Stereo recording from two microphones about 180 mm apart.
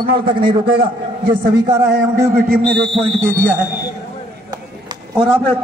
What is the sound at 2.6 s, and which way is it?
Speech, 5° left (ahead or behind).